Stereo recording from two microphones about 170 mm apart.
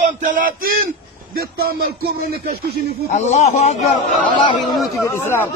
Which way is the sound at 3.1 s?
40° left (ahead or behind).